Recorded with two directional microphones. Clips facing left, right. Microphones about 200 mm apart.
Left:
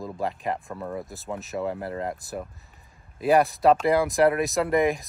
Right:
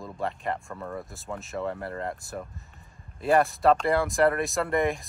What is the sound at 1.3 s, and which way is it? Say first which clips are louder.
Speech: left 2 dB; centre (ahead or behind).